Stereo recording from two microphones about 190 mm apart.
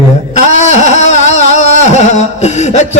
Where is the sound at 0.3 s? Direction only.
35° left (ahead or behind).